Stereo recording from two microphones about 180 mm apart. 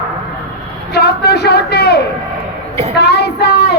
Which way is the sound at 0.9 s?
65° left (ahead or behind).